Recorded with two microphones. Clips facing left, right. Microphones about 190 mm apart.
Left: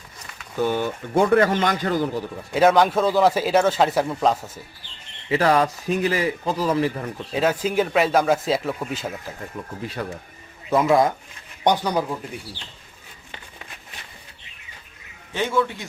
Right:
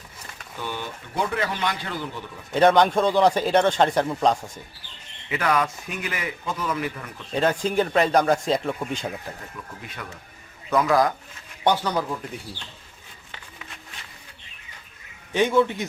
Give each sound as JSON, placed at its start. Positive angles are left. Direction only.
{"t": 0.6, "sound": "speech", "side_deg": 45}
{"t": 2.5, "sound": "speech", "side_deg": 5}
{"t": 5.3, "sound": "a man's voice", "side_deg": 30}
{"t": 7.3, "sound": "speech", "side_deg": 5}
{"t": 9.6, "sound": "a man's voice", "side_deg": 35}
{"t": 15.3, "sound": "speech", "side_deg": -15}